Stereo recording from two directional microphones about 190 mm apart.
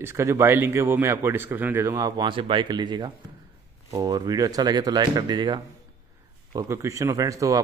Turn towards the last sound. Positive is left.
turn(degrees=-15)  # may be behind; listen again after turning